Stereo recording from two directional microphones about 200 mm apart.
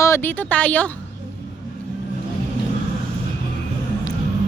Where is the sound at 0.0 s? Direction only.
10° left (ahead or behind).